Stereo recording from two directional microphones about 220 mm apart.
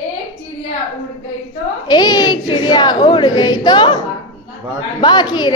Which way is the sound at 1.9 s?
20° left (ahead or behind).